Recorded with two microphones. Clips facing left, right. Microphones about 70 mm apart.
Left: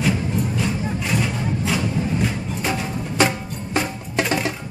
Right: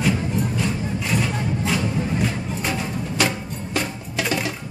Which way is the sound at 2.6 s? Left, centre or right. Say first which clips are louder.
Left 2 dB; left.